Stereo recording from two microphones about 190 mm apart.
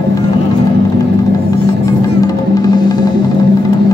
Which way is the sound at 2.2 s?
20° left (ahead or behind).